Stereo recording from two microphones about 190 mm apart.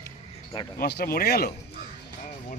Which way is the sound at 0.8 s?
55° left (ahead or behind).